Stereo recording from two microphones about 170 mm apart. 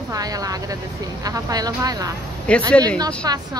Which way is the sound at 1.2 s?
20° right (ahead or behind).